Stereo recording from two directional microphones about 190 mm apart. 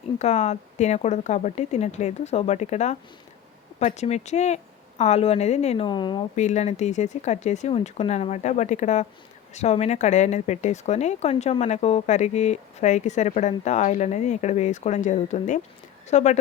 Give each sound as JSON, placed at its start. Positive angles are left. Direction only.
{"t": 0.2, "sound": "speech", "side_deg": 35}
{"t": 6.3, "sound": "speech", "side_deg": 40}